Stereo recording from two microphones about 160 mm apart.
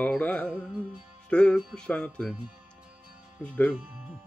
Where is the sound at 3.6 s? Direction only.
5° right (ahead or behind).